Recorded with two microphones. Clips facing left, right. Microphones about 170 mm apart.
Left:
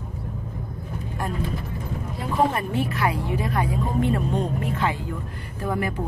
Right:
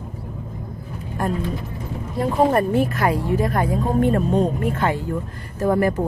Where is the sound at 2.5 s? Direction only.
45° right (ahead or behind).